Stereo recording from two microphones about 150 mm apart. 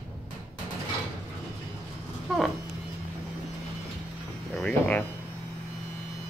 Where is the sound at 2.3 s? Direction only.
Centre (ahead or behind).